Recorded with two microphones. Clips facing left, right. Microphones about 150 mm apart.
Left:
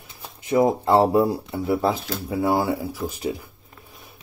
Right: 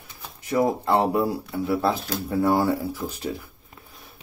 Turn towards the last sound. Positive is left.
turn(degrees=15)  # may be behind; listen again after turning